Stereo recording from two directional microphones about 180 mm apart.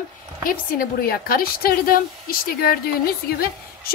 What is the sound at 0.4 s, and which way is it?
A woman's voice, 50° left (ahead or behind).